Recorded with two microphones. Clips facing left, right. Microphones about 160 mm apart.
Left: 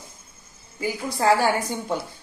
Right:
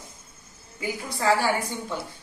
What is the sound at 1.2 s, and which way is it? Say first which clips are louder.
Speech: left 3 dB; 45° left (ahead or behind).